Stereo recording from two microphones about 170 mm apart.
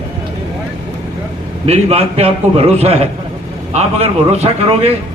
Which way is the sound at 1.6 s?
35° right (ahead or behind).